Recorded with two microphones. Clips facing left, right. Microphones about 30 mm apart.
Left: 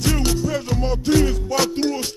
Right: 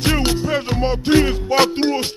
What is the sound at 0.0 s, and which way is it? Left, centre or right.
Music, right.